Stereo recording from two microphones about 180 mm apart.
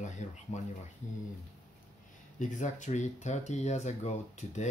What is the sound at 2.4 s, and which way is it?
Speech, 45° left (ahead or behind).